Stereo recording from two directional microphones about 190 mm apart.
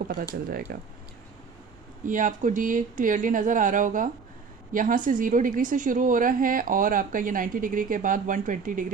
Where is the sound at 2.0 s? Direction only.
45° right (ahead or behind).